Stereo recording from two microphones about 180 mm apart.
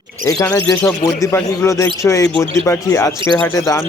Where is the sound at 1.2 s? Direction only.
15° left (ahead or behind).